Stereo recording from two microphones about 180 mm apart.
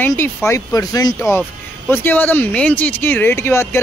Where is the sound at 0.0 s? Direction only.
10° left (ahead or behind).